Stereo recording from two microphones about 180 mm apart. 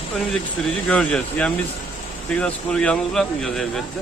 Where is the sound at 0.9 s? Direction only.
5° left (ahead or behind).